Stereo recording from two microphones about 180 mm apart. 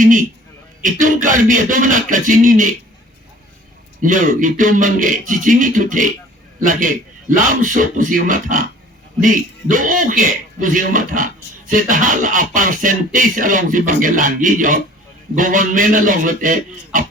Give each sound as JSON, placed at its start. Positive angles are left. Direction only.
{"t": 0.0, "sound": "speech", "side_deg": -50}
{"t": 4.0, "sound": "speech", "side_deg": -45}